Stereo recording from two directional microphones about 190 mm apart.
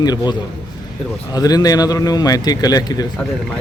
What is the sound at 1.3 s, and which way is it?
A man's voice, 20° left (ahead or behind).